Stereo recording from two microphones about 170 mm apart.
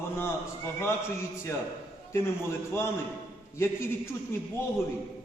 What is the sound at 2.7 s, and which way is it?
A man's voice, 15° left (ahead or behind).